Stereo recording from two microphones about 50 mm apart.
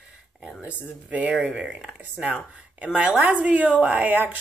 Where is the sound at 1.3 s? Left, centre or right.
Centre.